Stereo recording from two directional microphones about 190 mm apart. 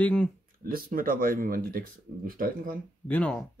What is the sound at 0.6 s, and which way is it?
Speech, 50° right (ahead or behind).